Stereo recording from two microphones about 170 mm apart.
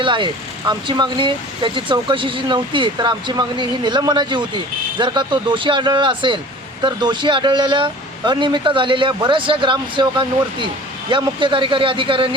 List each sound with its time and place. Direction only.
0.0 s speech: 30° right (ahead or behind)